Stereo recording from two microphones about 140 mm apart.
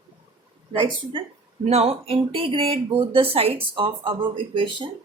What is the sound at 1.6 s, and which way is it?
Speech, 45° right (ahead or behind).